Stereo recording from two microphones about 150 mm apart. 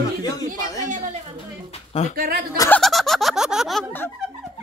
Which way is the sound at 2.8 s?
Centre (ahead or behind).